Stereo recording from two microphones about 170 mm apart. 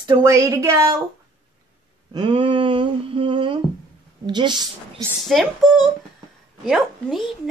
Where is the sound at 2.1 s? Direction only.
30° right (ahead or behind).